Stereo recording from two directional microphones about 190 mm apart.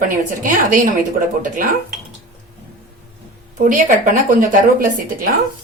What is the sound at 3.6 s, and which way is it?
A woman's voice, 45° right (ahead or behind).